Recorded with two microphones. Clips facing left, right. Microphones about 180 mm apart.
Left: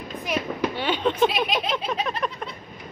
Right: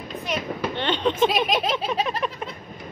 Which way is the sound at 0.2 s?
10° left (ahead or behind).